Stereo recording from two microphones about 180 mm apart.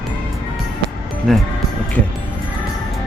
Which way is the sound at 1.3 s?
Centre (ahead or behind).